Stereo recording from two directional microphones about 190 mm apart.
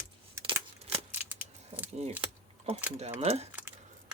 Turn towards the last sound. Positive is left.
turn(degrees=-35)  # may be behind; listen again after turning